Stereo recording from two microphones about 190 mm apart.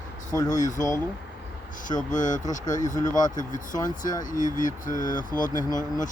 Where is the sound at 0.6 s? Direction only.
40° left (ahead or behind).